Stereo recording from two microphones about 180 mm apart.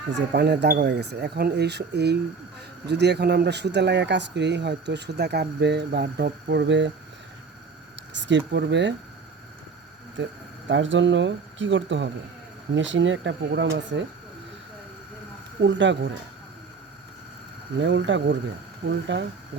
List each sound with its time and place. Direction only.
0.1 s speech: 70° right (ahead or behind)
8.1 s speech: 85° right
10.7 s speech: 90° right
15.6 s speech: 90° right
17.7 s speech: 85° right